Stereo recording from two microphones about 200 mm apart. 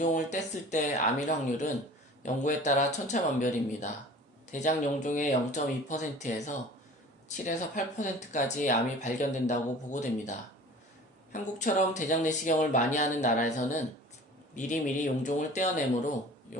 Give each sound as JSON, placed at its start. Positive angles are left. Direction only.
{"t": 0.0, "sound": "speech", "side_deg": 35}
{"t": 16.5, "sound": "pig", "side_deg": 40}